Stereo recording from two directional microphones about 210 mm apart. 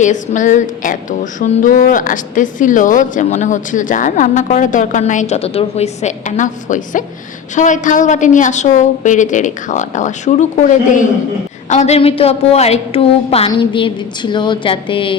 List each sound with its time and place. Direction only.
0.0 s a woman's voice: 35° left (ahead or behind)